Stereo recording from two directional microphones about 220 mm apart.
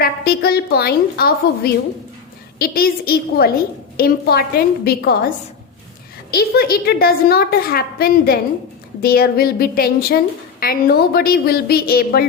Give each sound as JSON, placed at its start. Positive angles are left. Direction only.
{"t": 0.0, "sound": "a woman's voice", "side_deg": 45}
{"t": 6.3, "sound": "a woman's voice", "side_deg": 45}